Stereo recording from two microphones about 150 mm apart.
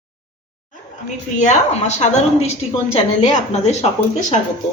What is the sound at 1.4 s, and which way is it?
A woman's voice, 55° left (ahead or behind).